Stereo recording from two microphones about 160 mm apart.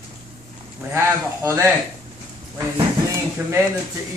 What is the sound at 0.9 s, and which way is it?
Speech, 15° right (ahead or behind).